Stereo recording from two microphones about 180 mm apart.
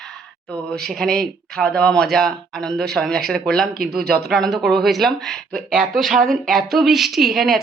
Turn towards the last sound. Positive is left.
turn(degrees=0)  # may be behind; listen again after turning